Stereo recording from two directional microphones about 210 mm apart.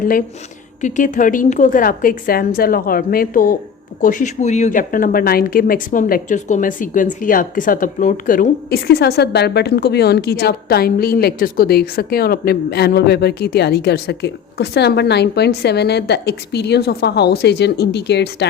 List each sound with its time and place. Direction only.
0.0 s a woman's voice: 40° left (ahead or behind)